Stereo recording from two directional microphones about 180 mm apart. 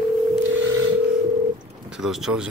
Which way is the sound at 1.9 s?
Centre (ahead or behind).